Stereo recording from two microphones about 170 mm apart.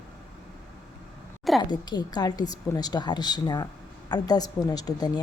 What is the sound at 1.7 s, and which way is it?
Speech, 25° left (ahead or behind).